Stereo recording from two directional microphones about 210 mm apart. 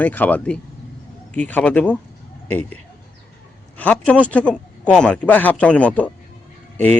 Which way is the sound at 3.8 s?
5° left (ahead or behind).